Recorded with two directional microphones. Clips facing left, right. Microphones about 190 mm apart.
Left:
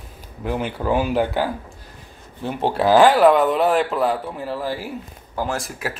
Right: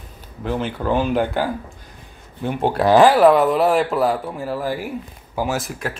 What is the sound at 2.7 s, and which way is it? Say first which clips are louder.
Speech: right 1 dB; centre (ahead or behind).